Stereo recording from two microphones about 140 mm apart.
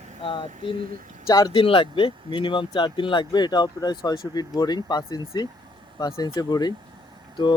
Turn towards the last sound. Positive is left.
turn(degrees=35)  # may be behind; listen again after turning